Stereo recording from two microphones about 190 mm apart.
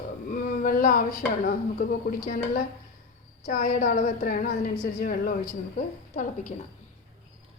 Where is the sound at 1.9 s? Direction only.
55° left (ahead or behind).